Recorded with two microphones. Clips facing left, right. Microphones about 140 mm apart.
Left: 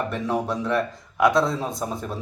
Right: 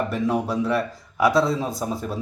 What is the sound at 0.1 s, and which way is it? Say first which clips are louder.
Speech: right 2 dB; centre (ahead or behind).